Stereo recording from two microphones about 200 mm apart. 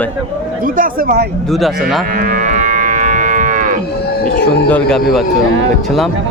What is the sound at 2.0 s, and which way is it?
Moo, 45° right (ahead or behind).